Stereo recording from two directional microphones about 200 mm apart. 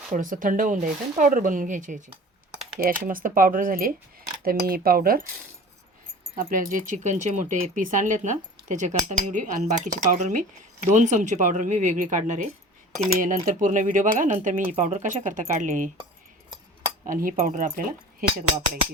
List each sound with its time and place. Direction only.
0.1 s speech: 40° right (ahead or behind)
6.3 s speech: 45° right (ahead or behind)
17.1 s speech: 45° right (ahead or behind)